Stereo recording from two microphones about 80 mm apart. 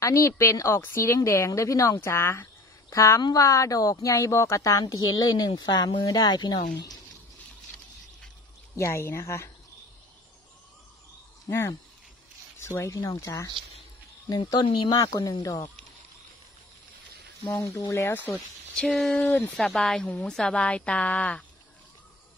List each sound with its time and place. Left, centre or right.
0.0 s speech: left
3.2 s speech: left
3.4 s speech: left
5.5 s speech: left
8.7 s speech: left
12.6 s speech: left
14.5 s speech: left
17.6 s speech: left
18.9 s speech: centre